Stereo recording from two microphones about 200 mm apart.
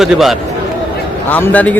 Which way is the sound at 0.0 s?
Centre (ahead or behind).